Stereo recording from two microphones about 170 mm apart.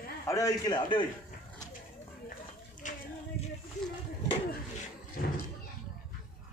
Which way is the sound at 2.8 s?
45° left (ahead or behind).